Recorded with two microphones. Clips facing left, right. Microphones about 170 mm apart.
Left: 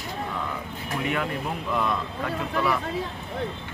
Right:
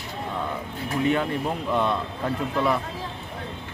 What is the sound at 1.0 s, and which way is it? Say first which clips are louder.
A man's voice: right 5 dB; 30° right (ahead or behind).